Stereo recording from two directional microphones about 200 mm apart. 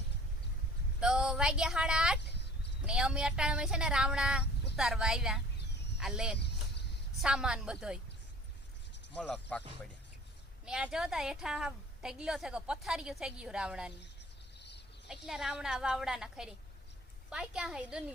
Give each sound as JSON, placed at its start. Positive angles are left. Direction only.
{"t": 0.9, "sound": "a woman's voice", "side_deg": -5}
{"t": 5.5, "sound": "a sound", "side_deg": 60}
{"t": 6.0, "sound": "a woman's voice", "side_deg": -5}
{"t": 9.2, "sound": "a woman's voice", "side_deg": 5}
{"t": 10.7, "sound": "a woman's voice", "side_deg": -5}
{"t": 15.3, "sound": "a woman's voice", "side_deg": 0}